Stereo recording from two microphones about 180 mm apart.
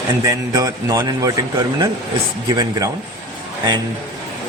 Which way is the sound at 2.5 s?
25° right (ahead or behind).